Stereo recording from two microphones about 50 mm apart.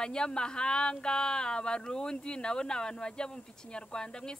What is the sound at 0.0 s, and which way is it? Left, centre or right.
Speech, centre.